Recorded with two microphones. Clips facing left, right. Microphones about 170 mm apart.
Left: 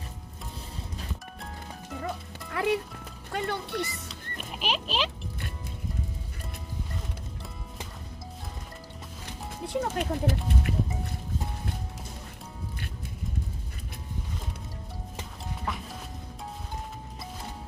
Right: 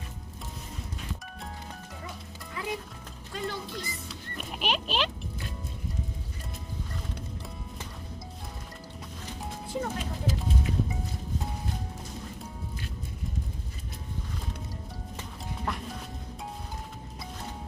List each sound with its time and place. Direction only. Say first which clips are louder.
2.5 s music: left 8 dB; 70° left (ahead or behind)
3.3 s speech: left 4 dB; 65° left (ahead or behind)
4.1 s goat: right 1 dB; centre (ahead or behind)
9.6 s speech: left 5 dB; 65° left (ahead or behind)
15.6 s music: right 1 dB; centre (ahead or behind)